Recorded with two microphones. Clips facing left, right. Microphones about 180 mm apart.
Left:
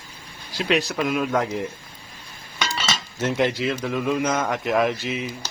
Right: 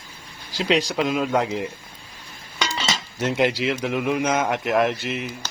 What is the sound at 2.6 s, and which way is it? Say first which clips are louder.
Chink: right 1 dB; 15° right (ahead or behind).